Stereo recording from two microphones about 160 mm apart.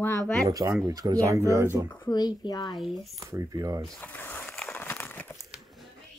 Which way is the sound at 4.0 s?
10° left (ahead or behind).